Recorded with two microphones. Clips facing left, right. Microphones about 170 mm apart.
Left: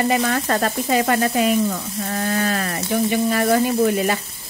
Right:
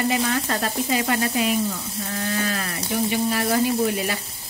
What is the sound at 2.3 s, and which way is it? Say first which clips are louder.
Speech: left 4 dB; 50° left (ahead or behind).